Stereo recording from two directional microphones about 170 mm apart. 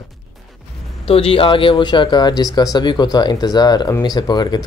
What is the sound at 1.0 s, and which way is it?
Speech, 35° left (ahead or behind).